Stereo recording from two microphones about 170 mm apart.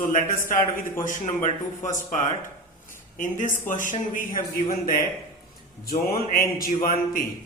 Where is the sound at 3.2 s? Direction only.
50° left (ahead or behind).